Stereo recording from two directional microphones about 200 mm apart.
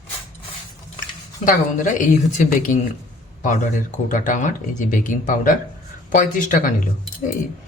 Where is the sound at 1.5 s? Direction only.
40° left (ahead or behind).